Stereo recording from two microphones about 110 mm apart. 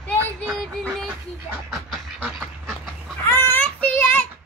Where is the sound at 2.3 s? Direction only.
Centre (ahead or behind).